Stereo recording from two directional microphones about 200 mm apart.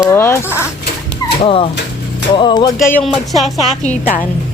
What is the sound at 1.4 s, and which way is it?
Music, 25° left (ahead or behind).